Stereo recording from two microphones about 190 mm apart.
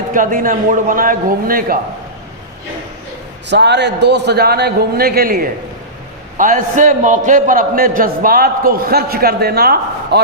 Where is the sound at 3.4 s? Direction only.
65° right (ahead or behind).